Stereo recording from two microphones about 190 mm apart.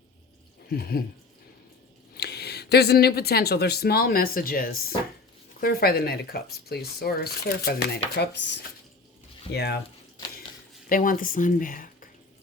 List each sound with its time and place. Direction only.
0.7 s speech: 55° left (ahead or behind)
2.1 s speech: 60° left (ahead or behind)
9.5 s speech: 60° left (ahead or behind)
10.8 s speech: 45° left (ahead or behind)